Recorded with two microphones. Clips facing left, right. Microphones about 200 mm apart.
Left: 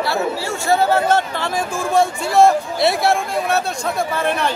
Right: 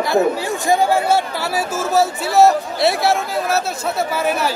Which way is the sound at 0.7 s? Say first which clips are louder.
Even; 10° right (ahead or behind).